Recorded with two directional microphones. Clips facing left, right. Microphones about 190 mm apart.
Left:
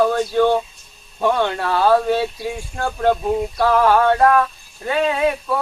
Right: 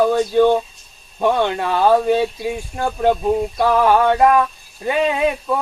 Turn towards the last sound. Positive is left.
turn(degrees=-20)  # may be behind; listen again after turning